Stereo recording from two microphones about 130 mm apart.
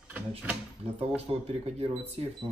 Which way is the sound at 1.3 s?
50° right (ahead or behind).